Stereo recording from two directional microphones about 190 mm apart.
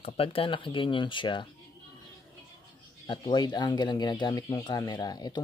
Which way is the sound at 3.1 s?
25° left (ahead or behind).